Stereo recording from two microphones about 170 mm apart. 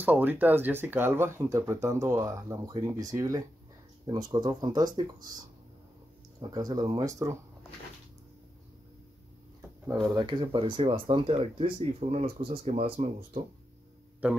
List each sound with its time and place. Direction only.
0.0 s speech: 10° right (ahead or behind)
6.4 s speech: 20° right (ahead or behind)
10.0 s speech: 25° right (ahead or behind)